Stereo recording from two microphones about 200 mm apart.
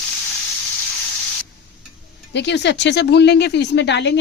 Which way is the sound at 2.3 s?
60° left (ahead or behind).